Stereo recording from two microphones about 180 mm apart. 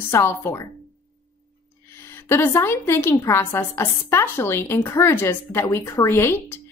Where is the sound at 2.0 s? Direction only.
15° left (ahead or behind).